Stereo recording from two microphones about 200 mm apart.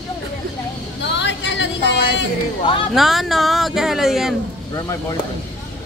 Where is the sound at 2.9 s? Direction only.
Centre (ahead or behind).